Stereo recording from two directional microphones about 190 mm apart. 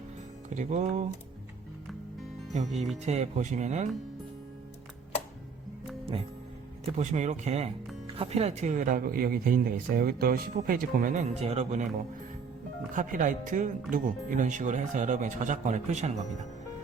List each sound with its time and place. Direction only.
0.5 s speech: 40° right (ahead or behind)
3.0 s speech: 35° right (ahead or behind)
6.9 s speech: 40° right (ahead or behind)